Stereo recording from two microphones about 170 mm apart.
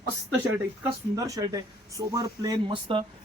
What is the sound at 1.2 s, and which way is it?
Speech, 20° right (ahead or behind).